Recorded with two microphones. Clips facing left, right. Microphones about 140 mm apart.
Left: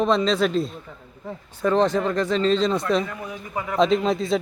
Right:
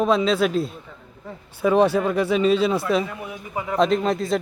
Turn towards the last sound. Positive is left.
turn(degrees=0)  # may be behind; listen again after turning